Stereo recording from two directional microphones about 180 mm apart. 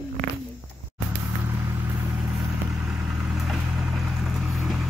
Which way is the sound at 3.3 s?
Centre (ahead or behind).